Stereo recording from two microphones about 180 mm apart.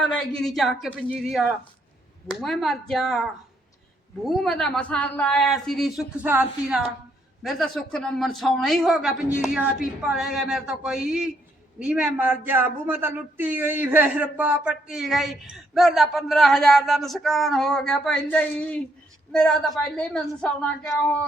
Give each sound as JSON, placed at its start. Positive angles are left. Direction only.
{"t": 0.0, "sound": "speech", "side_deg": 5}
{"t": 4.3, "sound": "speech", "side_deg": 0}
{"t": 7.4, "sound": "speech", "side_deg": 0}